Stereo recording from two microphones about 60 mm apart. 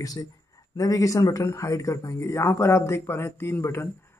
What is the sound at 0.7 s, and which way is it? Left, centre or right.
Speech, left.